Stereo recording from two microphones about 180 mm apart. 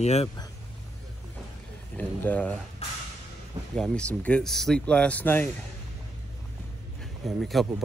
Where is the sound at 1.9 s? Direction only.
10° left (ahead or behind).